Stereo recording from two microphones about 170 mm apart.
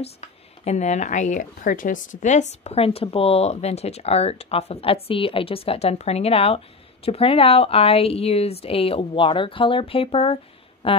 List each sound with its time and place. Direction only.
0.0 s speech: 40° left (ahead or behind)